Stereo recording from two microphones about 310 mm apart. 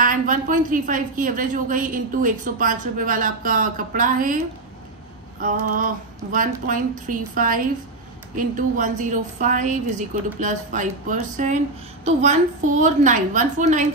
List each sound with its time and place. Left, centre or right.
0.0 s a woman's voice: right
5.4 s a woman's voice: right